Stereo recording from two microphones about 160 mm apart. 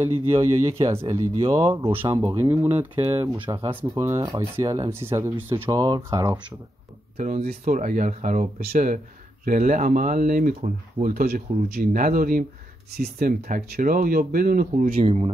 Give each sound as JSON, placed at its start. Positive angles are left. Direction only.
{"t": 0.0, "sound": "speech", "side_deg": -15}
{"t": 3.4, "sound": "speech", "side_deg": -30}
{"t": 5.8, "sound": "speech", "side_deg": -25}
{"t": 7.2, "sound": "speech", "side_deg": -45}
{"t": 7.4, "sound": "speech", "side_deg": -55}
{"t": 15.0, "sound": "speech", "side_deg": -35}